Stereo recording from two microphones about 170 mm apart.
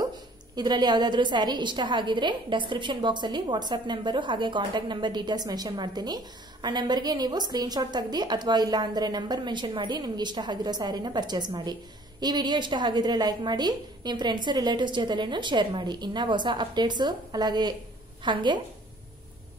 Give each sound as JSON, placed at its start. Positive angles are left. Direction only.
{"t": 0.6, "sound": "a woman's voice", "side_deg": -25}